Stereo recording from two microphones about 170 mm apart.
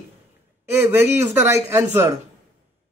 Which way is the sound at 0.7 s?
15° right (ahead or behind).